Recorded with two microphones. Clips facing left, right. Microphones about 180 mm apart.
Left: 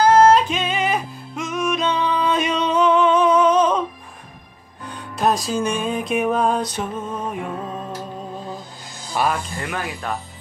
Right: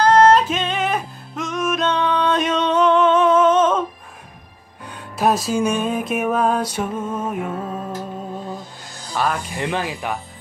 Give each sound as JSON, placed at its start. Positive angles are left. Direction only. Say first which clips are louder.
{"t": 0.0, "sound": "music", "louder": "even", "side_deg": 5}
{"t": 4.8, "sound": "music", "louder": "right 1 dB", "side_deg": -5}
{"t": 9.1, "sound": "speech", "louder": "left 1 dB", "side_deg": 10}
{"t": 9.6, "sound": "speech", "louder": "right 4 dB", "side_deg": -25}